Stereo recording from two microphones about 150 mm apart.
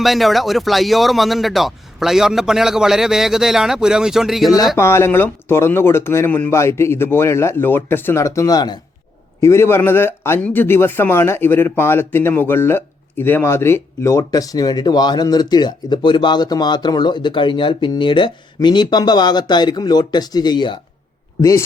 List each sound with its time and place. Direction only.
0.0 s speech: centre (ahead or behind)
4.8 s speech: 15° left (ahead or behind)